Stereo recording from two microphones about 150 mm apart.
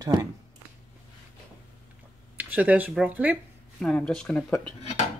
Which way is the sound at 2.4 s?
10° right (ahead or behind).